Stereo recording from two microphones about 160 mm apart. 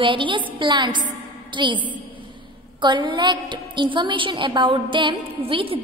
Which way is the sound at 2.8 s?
30° right (ahead or behind).